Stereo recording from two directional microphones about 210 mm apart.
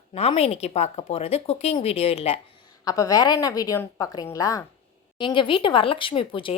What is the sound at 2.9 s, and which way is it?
A woman's voice, 15° left (ahead or behind).